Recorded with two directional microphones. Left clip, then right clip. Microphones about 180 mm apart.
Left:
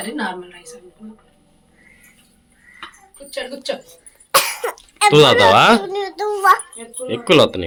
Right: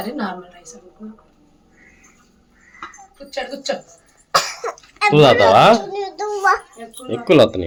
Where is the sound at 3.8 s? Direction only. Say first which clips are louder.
Left 2 dB; 45° left (ahead or behind).